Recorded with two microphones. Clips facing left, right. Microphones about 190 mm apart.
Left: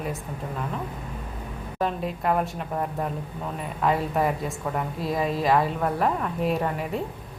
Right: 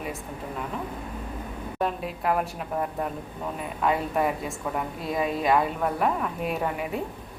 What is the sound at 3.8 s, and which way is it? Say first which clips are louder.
Speech: left 1 dB; centre (ahead or behind).